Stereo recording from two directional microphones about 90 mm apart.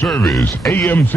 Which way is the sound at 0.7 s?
20° left (ahead or behind).